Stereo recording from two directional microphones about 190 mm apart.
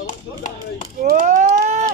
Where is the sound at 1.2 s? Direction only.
40° right (ahead or behind).